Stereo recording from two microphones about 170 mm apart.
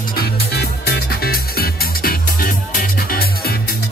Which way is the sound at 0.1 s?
65° left (ahead or behind).